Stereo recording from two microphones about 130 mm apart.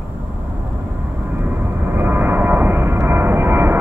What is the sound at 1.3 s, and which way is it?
Vehicle, 15° right (ahead or behind).